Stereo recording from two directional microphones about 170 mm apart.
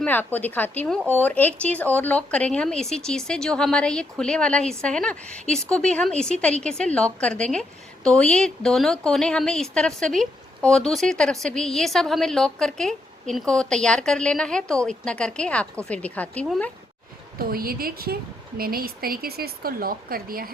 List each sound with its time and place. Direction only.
0.0 s a woman's voice: 10° left (ahead or behind)
17.3 s a woman's voice: 60° right (ahead or behind)